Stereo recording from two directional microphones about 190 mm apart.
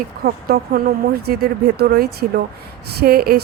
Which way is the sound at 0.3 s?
50° right (ahead or behind).